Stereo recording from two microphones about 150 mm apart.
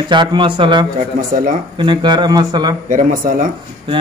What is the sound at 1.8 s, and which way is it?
Speech, 30° right (ahead or behind).